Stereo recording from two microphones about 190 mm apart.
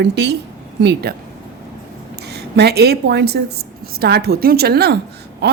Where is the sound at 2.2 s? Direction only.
60° right (ahead or behind).